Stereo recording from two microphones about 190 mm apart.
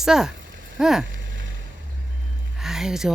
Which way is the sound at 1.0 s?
80° right.